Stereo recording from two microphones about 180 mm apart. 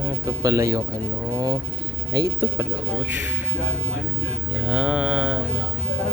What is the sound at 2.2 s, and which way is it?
Speech, 60° right (ahead or behind).